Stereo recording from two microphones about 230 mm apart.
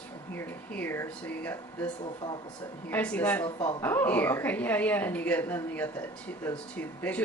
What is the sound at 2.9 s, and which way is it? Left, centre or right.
Speech, centre.